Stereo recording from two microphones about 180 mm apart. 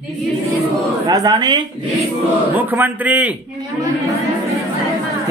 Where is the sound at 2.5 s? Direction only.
10° right (ahead or behind).